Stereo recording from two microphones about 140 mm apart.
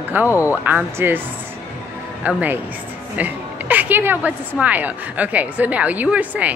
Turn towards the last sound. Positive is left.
turn(degrees=-10)  # may be behind; listen again after turning